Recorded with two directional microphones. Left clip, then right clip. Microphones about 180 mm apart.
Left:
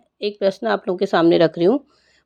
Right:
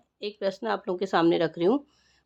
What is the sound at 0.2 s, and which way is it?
Speech, 25° left (ahead or behind).